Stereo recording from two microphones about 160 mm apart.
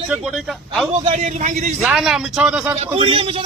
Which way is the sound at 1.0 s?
50° right (ahead or behind).